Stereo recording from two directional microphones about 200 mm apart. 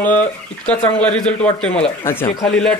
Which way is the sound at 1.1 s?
5° left (ahead or behind).